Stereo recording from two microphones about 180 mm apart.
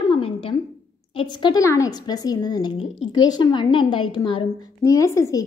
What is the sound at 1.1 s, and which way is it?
A woman's voice, 25° left (ahead or behind).